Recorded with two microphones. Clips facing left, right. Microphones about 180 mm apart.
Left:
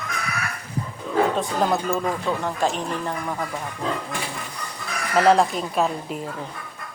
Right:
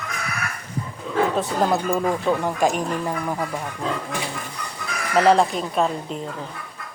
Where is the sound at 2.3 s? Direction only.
15° right (ahead or behind).